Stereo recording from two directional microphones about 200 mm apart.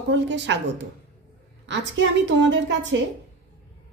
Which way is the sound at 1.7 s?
65° right (ahead or behind).